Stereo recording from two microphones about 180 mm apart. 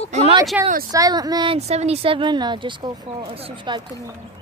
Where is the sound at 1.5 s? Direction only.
35° right (ahead or behind).